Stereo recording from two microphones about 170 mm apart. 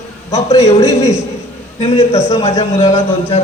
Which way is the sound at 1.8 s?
35° left (ahead or behind).